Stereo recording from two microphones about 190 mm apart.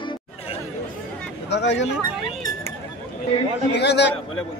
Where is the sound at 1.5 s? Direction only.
70° left (ahead or behind).